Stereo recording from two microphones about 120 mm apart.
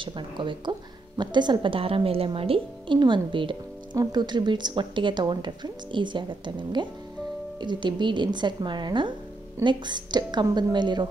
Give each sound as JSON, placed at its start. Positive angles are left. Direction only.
{"t": 0.0, "sound": "a woman's voice", "side_deg": -45}